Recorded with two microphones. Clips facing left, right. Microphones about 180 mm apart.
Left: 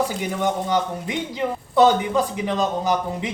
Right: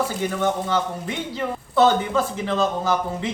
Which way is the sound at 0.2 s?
15° left (ahead or behind).